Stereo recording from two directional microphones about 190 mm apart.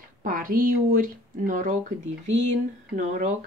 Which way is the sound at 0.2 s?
45° right (ahead or behind).